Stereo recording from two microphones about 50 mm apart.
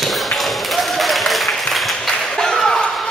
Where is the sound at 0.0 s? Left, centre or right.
Centre.